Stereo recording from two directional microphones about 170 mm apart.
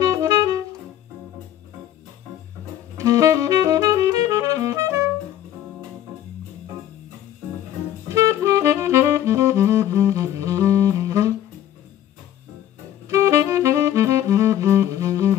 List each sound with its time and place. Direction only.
0.0 s music: 20° right (ahead or behind)
3.0 s saxophone: 20° right (ahead or behind)
8.1 s saxophone: 15° right (ahead or behind)
13.1 s saxophone: 15° right (ahead or behind)